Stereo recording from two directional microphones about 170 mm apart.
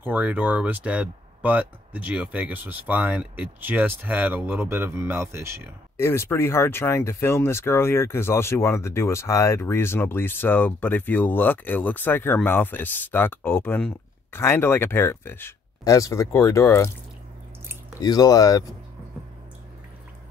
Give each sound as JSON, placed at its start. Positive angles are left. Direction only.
{"t": 0.0, "sound": "speech", "side_deg": -10}
{"t": 5.9, "sound": "speech", "side_deg": 15}
{"t": 18.0, "sound": "speech", "side_deg": 20}